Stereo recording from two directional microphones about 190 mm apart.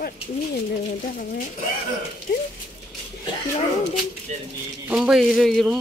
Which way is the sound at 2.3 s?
55° left (ahead or behind).